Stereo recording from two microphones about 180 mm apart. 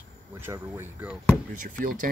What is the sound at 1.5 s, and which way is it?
Speech, 50° right (ahead or behind).